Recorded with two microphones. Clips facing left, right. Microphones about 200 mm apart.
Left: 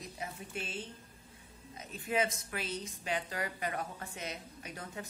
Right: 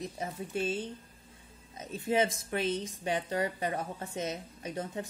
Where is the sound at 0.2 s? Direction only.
35° right (ahead or behind).